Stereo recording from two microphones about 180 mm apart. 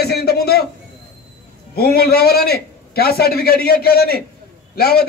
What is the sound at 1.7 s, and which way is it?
A man's voice, 60° left (ahead or behind).